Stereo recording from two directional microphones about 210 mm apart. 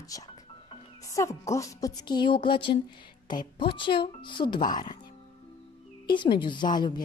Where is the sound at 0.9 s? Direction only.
15° left (ahead or behind).